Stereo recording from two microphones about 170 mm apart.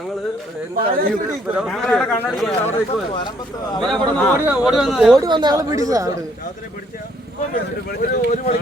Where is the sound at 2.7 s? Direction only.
30° left (ahead or behind).